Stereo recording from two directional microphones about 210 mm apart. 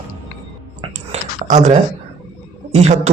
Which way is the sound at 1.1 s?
35° right (ahead or behind).